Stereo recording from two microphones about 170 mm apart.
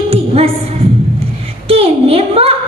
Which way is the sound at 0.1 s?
35° right (ahead or behind).